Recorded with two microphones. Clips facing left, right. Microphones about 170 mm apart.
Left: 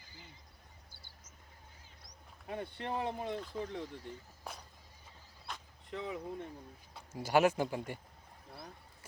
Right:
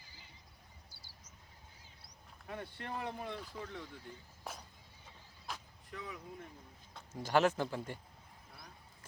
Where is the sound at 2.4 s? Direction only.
25° left (ahead or behind).